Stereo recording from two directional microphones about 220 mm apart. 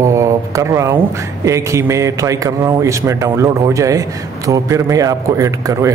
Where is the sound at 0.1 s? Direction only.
15° right (ahead or behind).